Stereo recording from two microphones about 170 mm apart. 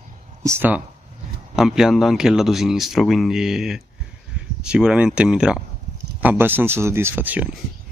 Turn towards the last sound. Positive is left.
turn(degrees=-10)  # may be behind; listen again after turning